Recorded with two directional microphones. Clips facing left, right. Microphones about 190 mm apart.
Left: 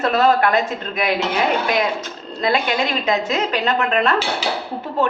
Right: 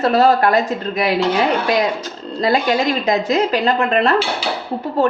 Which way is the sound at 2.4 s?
40° right (ahead or behind).